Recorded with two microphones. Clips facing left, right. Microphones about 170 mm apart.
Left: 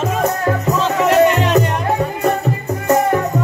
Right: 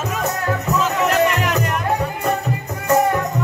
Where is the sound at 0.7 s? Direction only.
30° left (ahead or behind).